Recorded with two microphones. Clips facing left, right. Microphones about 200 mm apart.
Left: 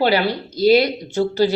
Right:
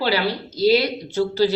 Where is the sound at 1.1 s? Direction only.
50° left (ahead or behind).